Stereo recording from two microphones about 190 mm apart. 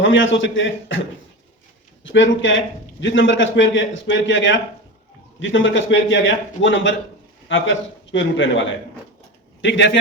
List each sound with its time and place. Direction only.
0.0 s a man's voice: 80° left
2.0 s a man's voice: 80° left